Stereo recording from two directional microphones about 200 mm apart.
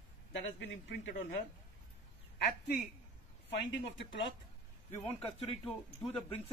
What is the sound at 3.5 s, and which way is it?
Speech, 60° left (ahead or behind).